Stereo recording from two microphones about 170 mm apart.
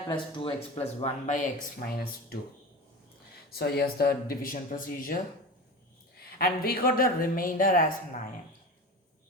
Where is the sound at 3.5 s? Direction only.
65° left (ahead or behind).